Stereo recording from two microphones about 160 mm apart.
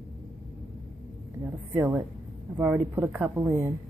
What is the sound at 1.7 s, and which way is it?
A woman's voice, 10° right (ahead or behind).